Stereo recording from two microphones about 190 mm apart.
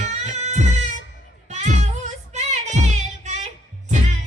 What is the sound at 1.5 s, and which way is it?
Music, 35° right (ahead or behind).